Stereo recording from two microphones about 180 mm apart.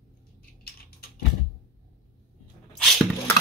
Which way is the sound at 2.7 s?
5° left (ahead or behind).